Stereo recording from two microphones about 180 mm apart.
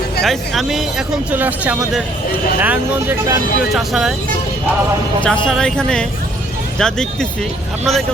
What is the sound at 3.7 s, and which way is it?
Speech, centre (ahead or behind).